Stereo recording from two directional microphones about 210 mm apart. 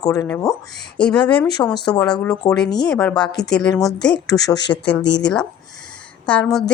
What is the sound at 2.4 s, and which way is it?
Speech, 15° left (ahead or behind).